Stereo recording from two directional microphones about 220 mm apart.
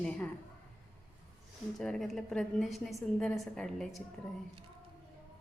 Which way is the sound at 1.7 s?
Centre (ahead or behind).